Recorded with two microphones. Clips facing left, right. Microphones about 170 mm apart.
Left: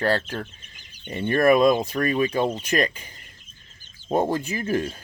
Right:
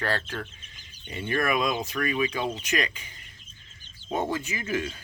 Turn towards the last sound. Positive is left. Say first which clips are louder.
# left 5 dB
turn(degrees=35)  # may be behind; listen again after turning